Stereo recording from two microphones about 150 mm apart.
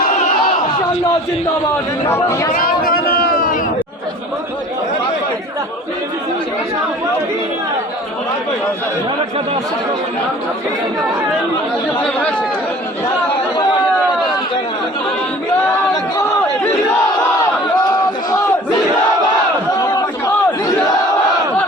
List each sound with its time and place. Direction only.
2.0 s speech: 20° left (ahead or behind)
2.6 s a sound: 85° left; by 3.6 s 70° left (ahead or behind)
11.9 s speech: 10° left (ahead or behind)
17.7 s chatter: 25° left (ahead or behind)
19.8 s crowd: 25° left (ahead or behind)